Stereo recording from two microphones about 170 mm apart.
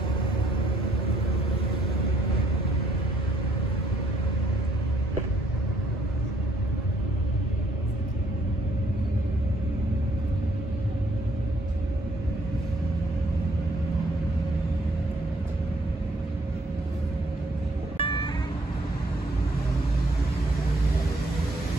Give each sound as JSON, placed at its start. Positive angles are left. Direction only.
{"t": 17.9, "sound": "music", "side_deg": 30}